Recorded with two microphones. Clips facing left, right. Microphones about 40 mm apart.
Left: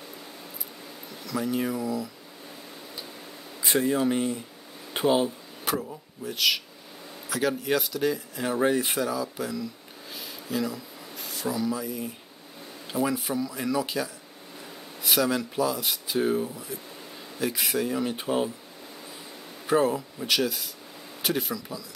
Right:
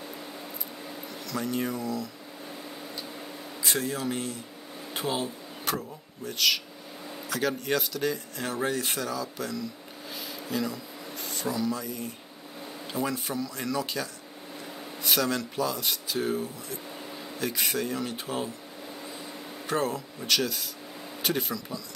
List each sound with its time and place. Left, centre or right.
1.2 s speech: centre
3.6 s speech: centre
10.1 s a sound: centre
12.9 s speech: centre
19.6 s speech: centre